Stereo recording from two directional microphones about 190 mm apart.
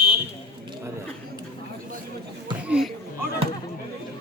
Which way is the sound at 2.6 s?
5° right (ahead or behind).